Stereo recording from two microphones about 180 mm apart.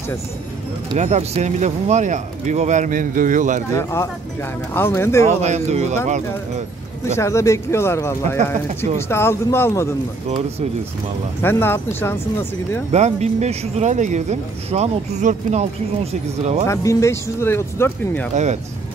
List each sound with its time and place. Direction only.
0.9 s speech: 40° right (ahead or behind)
3.7 s speech: 15° left (ahead or behind)
5.4 s speech: 40° right (ahead or behind)
7.2 s speech: 15° left (ahead or behind)
11.4 s speech: 10° left (ahead or behind)
12.9 s speech: 40° right (ahead or behind)
16.6 s speech: 15° left (ahead or behind)
18.3 s speech: 40° right (ahead or behind)